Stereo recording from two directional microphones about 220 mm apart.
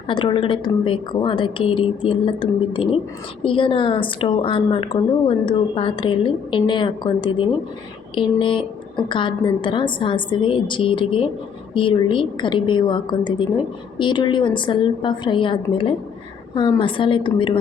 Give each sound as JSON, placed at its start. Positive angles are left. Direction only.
{"t": 0.1, "sound": "a woman's voice", "side_deg": 20}